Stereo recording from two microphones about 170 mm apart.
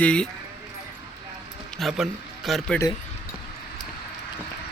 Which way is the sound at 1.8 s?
Centre (ahead or behind).